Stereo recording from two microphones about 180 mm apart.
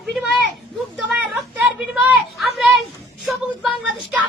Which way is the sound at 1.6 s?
10° right (ahead or behind).